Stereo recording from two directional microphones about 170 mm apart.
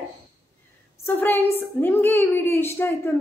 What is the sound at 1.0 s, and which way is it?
A woman's voice, 10° left (ahead or behind).